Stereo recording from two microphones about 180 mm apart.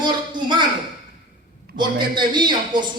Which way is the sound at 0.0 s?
25° right (ahead or behind).